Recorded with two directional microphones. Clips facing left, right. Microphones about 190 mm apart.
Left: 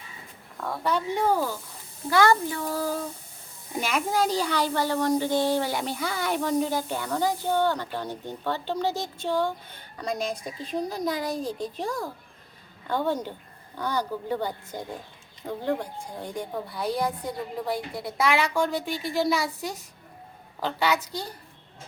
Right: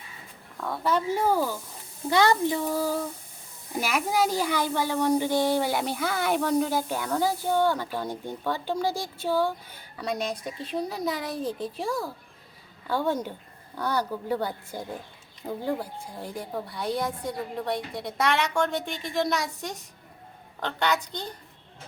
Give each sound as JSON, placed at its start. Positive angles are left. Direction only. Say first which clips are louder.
{"t": 0.5, "sound": "a woman's voice", "louder": "right 1 dB", "side_deg": 0}
{"t": 2.0, "sound": "speech", "louder": "even", "side_deg": -20}
{"t": 6.4, "sound": "a woman's voice", "louder": "left 1 dB", "side_deg": 10}
{"t": 6.7, "sound": "speech", "louder": "right 1 dB", "side_deg": -5}
{"t": 13.9, "sound": "a woman's voice", "louder": "right 1 dB", "side_deg": -10}